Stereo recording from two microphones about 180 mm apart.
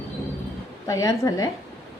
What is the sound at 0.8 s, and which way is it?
Speech, 20° left (ahead or behind).